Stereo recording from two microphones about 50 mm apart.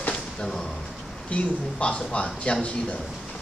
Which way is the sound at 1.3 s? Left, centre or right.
Left.